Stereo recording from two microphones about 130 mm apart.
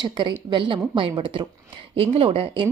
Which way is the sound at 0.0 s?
35° right (ahead or behind).